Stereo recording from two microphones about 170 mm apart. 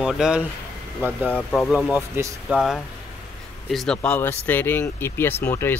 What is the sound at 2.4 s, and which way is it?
Speech, centre (ahead or behind).